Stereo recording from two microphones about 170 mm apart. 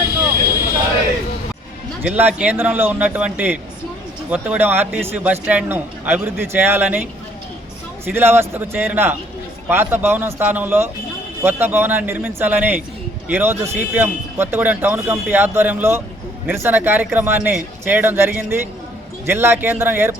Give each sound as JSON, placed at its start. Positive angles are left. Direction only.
{"t": 2.0, "sound": "a man's voice", "side_deg": -10}